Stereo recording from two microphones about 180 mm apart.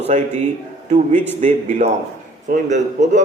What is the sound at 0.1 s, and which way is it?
A man's voice, 40° right (ahead or behind).